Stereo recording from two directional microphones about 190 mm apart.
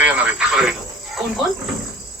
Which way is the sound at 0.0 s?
5° right (ahead or behind).